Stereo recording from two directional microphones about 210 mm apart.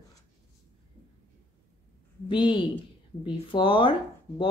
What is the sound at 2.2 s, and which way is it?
A woman's voice, 25° left (ahead or behind).